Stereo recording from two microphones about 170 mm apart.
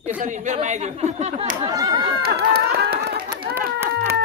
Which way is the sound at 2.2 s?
70° right (ahead or behind).